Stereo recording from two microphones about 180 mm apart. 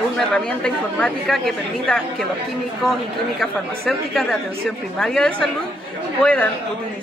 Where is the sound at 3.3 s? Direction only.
Centre (ahead or behind).